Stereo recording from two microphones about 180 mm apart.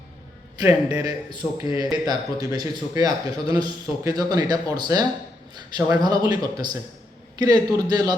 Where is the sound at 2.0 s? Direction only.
20° right (ahead or behind).